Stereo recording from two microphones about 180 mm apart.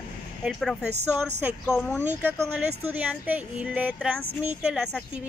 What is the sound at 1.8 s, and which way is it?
Speech, 10° left (ahead or behind).